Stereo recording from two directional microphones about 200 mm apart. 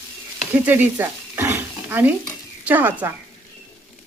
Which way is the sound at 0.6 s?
10° right (ahead or behind).